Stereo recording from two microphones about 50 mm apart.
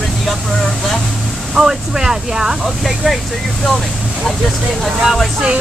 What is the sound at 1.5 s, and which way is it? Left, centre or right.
Speech, centre.